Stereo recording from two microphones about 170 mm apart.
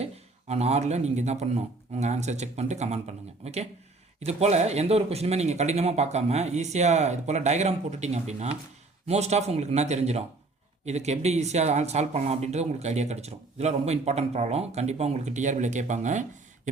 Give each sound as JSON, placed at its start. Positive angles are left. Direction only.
{"t": 0.0, "sound": "speech", "side_deg": -40}